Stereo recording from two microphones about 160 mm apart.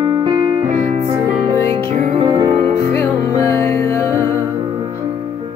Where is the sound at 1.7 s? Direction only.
25° right (ahead or behind).